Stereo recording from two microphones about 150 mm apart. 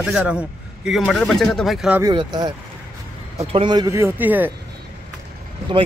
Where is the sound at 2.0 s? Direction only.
30° right (ahead or behind).